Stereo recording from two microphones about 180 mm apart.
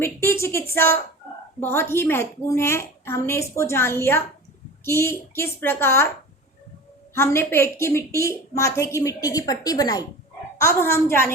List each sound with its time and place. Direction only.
0.0 s a woman's voice: 15° left (ahead or behind)
7.1 s a woman's voice: 15° left (ahead or behind)